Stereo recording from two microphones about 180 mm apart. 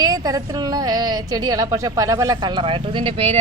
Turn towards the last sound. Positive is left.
turn(degrees=-30)  # may be behind; listen again after turning